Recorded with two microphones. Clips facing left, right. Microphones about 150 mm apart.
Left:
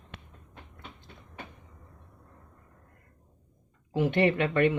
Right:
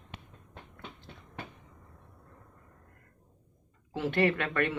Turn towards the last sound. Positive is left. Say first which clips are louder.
# left 5 dB
turn(degrees=20)  # may be behind; listen again after turning